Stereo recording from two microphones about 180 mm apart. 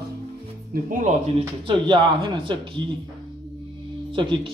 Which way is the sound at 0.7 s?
50° right (ahead or behind).